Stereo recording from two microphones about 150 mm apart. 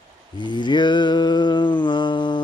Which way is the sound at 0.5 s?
30° left (ahead or behind).